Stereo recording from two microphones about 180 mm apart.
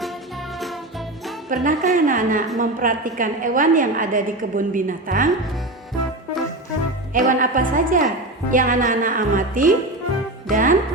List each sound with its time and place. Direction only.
1.5 s a woman's voice: 50° right (ahead or behind)
7.1 s a woman's voice: 50° right (ahead or behind)